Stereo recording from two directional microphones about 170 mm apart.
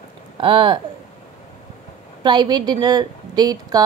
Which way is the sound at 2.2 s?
25° right (ahead or behind).